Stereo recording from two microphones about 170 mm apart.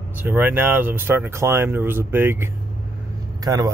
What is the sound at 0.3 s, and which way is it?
Speech, 10° right (ahead or behind).